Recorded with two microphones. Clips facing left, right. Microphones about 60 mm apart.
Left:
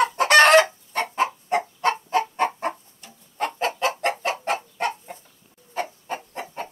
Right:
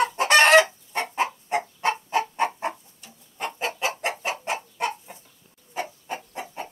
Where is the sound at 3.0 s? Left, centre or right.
Left.